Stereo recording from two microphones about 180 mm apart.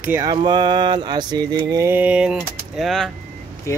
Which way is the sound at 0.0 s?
10° right (ahead or behind).